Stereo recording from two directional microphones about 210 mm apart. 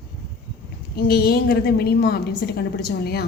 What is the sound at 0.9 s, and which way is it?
A woman's voice, 45° left (ahead or behind).